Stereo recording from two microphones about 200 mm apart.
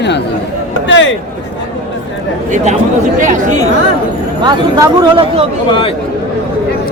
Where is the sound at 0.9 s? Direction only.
65° left (ahead or behind).